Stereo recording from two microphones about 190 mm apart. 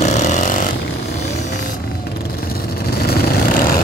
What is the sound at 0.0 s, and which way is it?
Vehicle, 35° left (ahead or behind).